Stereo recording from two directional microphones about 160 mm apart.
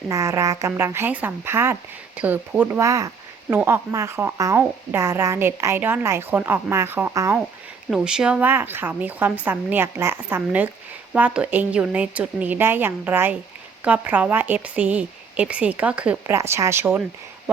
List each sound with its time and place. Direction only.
0.1 s speech: 20° right (ahead or behind)
7.9 s speech: 5° right (ahead or behind)